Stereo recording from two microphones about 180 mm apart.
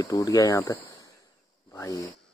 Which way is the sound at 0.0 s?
20° left (ahead or behind).